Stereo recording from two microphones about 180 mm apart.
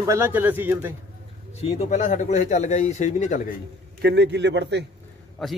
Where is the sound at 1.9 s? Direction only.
45° left (ahead or behind).